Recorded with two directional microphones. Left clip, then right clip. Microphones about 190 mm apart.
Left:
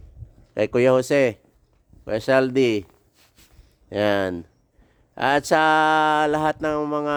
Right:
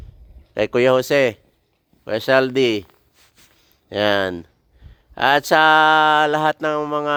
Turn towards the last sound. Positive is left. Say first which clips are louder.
# right 3 dB
turn(degrees=-10)  # may be behind; listen again after turning